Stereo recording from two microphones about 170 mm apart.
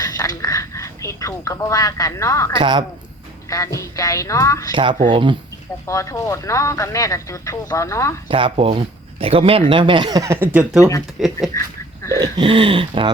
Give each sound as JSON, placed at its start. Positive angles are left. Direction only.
{"t": 0.0, "sound": "speech", "side_deg": 20}
{"t": 2.6, "sound": "speech", "side_deg": -30}
{"t": 3.5, "sound": "a woman's voice", "side_deg": 20}
{"t": 4.7, "sound": "speech", "side_deg": -30}
{"t": 5.8, "sound": "speech", "side_deg": 20}
{"t": 8.3, "sound": "speech", "side_deg": -30}
{"t": 12.2, "sound": "speech", "side_deg": -30}